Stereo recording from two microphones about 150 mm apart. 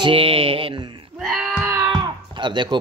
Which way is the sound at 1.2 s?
5° right (ahead or behind).